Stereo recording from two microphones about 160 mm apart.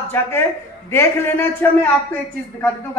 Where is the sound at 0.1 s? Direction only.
15° left (ahead or behind).